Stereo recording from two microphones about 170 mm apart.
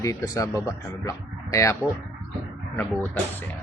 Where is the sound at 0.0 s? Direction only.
20° left (ahead or behind).